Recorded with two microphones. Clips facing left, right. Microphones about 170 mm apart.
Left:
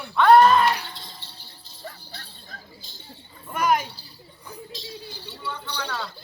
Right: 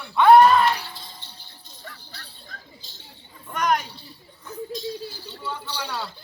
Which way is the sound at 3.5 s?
5° left (ahead or behind).